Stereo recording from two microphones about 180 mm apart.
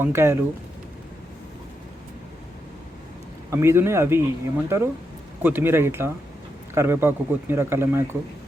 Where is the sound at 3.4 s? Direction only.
15° right (ahead or behind).